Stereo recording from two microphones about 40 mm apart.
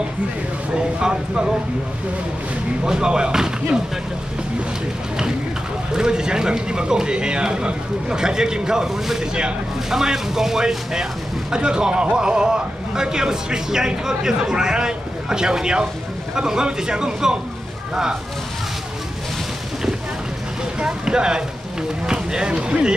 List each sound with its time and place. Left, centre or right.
0.7 s speech: right
2.8 s speech: centre
5.9 s speech: centre
20.8 s speech: centre